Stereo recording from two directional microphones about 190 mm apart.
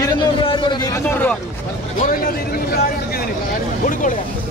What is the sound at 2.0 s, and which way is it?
Vehicle, 50° left (ahead or behind).